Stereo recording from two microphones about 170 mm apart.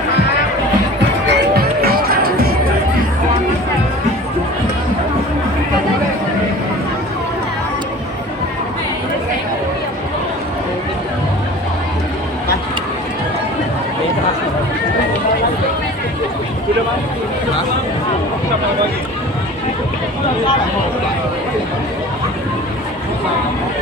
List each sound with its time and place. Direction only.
1.3 s music: 70° right (ahead or behind)